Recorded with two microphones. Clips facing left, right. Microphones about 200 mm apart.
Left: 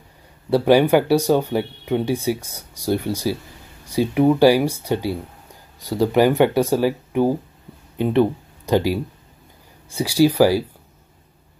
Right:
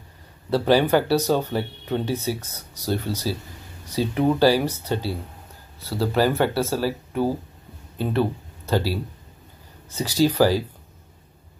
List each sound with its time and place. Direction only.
0.5 s speech: 15° left (ahead or behind)